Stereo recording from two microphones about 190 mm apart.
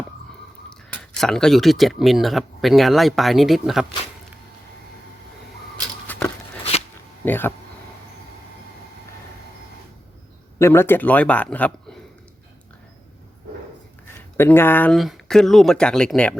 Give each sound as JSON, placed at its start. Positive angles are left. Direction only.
{"t": 1.2, "sound": "speech", "side_deg": 5}
{"t": 6.1, "sound": "a sound", "side_deg": 10}
{"t": 6.6, "sound": "a sound", "side_deg": 35}
{"t": 7.3, "sound": "a man's voice", "side_deg": 10}
{"t": 10.6, "sound": "a man's voice", "side_deg": 10}
{"t": 14.3, "sound": "speech", "side_deg": 10}